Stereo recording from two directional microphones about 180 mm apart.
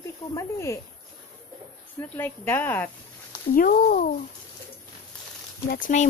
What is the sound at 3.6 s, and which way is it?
Speech, 50° left (ahead or behind).